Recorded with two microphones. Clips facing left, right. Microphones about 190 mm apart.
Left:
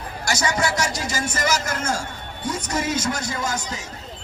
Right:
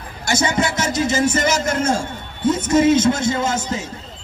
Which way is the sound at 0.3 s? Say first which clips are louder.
Right 4 dB; 25° right (ahead or behind).